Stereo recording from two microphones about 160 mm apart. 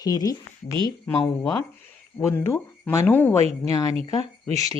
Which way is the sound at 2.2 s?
15° left (ahead or behind).